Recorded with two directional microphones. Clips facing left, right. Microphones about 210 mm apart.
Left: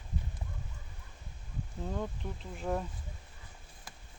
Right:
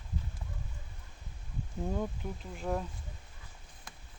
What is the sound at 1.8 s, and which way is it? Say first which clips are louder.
Speech: right 2 dB; 10° right (ahead or behind).